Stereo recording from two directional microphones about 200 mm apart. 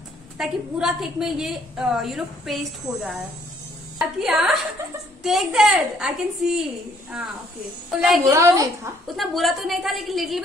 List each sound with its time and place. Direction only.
0.4 s a woman's voice: centre (ahead or behind)
8.3 s a woman's voice: 15° right (ahead or behind)
9.0 s a woman's voice: centre (ahead or behind)